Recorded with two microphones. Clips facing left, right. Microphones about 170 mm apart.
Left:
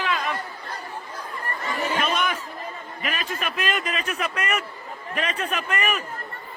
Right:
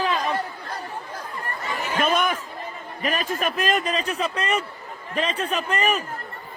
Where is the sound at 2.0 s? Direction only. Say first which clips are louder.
Right 3 dB; 50° right (ahead or behind).